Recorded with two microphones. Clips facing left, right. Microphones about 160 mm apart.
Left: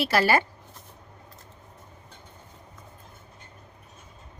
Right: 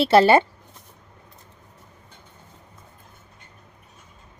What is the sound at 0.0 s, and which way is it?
Speech, 25° right (ahead or behind).